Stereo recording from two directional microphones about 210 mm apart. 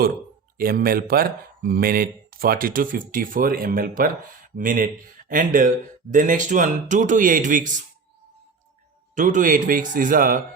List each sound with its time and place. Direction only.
0.5 s speech: 45° right (ahead or behind)
9.1 s speech: 35° right (ahead or behind)